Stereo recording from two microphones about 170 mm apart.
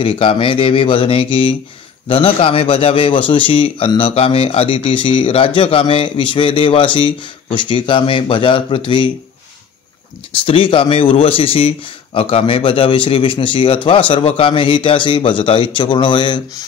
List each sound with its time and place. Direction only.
0.0 s a man's voice: 30° left (ahead or behind)
10.4 s a man's voice: 30° left (ahead or behind)